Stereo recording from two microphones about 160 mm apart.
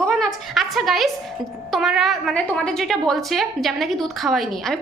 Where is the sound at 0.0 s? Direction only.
5° left (ahead or behind).